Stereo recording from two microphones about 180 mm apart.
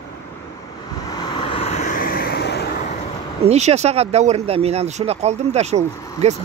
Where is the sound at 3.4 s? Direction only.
35° right (ahead or behind).